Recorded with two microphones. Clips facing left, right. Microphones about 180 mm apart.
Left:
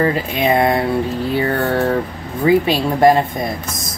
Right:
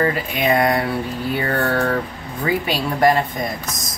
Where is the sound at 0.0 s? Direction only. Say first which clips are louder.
Left 3 dB; 25° left (ahead or behind).